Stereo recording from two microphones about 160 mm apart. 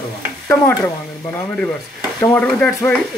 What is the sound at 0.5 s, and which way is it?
Speech, 15° left (ahead or behind).